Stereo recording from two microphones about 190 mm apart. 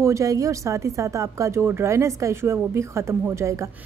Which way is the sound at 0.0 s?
15° right (ahead or behind).